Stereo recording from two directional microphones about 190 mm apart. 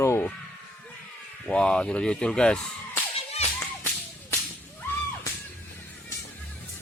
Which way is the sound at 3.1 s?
35° left (ahead or behind).